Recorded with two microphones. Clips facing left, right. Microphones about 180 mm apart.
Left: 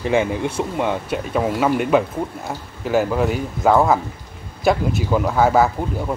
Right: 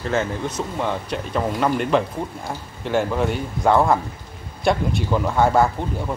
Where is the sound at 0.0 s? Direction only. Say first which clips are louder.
Left 4 dB; 15° left (ahead or behind).